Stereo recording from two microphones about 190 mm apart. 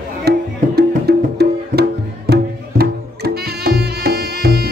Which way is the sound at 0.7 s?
55° right (ahead or behind).